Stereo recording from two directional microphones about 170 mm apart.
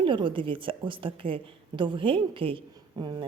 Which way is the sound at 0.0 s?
30° right (ahead or behind).